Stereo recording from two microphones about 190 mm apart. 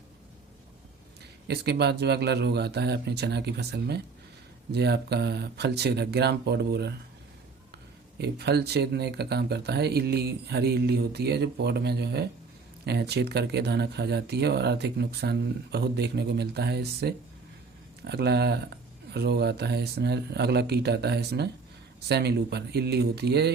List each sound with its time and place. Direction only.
1.5 s speech: 60° right (ahead or behind)
8.2 s speech: 60° right (ahead or behind)